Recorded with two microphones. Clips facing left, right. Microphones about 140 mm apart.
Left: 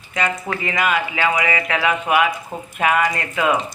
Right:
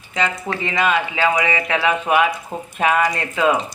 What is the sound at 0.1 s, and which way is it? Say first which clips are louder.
Speech: even; 20° right (ahead or behind).